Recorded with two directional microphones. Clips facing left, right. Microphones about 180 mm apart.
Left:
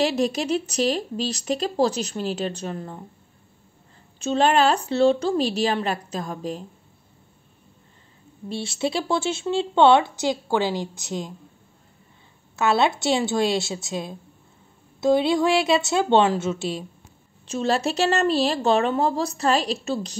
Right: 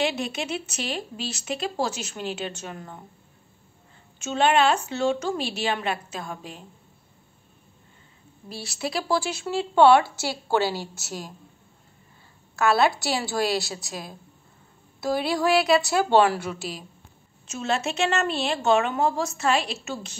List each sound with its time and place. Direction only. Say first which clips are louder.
0.0 s speech: left 5 dB; 40° left (ahead or behind)
4.2 s speech: left 2 dB; 35° left (ahead or behind)
8.5 s a woman's voice: left 6 dB; 25° left (ahead or behind)
12.5 s a woman's voice: even; 20° left (ahead or behind)